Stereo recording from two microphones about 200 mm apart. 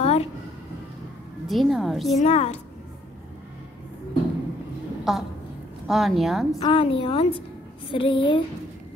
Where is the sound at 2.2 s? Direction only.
30° left (ahead or behind).